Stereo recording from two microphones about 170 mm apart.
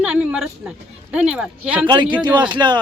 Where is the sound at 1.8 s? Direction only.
25° right (ahead or behind).